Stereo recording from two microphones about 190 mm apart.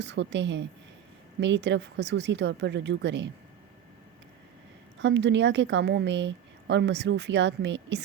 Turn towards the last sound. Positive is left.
turn(degrees=-65)  # may be behind; listen again after turning